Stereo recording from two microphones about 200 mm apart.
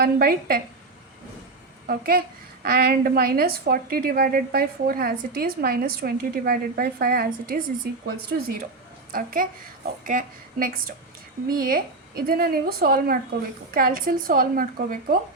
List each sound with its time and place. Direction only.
0.0 s a woman's voice: 45° right (ahead or behind)
1.9 s a woman's voice: 45° right (ahead or behind)
9.1 s a woman's voice: 45° right (ahead or behind)